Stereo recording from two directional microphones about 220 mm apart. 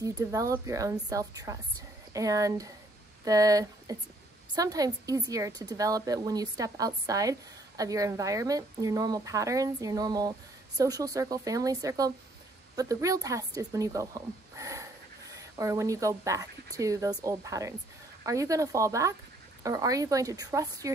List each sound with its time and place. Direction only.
0.0 s a woman's voice: 15° right (ahead or behind)